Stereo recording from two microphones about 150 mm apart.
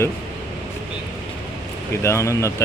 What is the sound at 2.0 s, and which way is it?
Speech, 20° left (ahead or behind).